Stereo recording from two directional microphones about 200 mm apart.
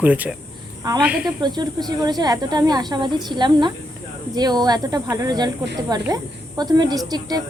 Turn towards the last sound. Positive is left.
turn(degrees=-20)  # may be behind; listen again after turning